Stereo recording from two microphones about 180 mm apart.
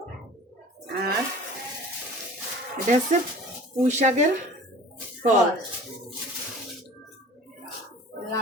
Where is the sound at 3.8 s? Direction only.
40° right (ahead or behind).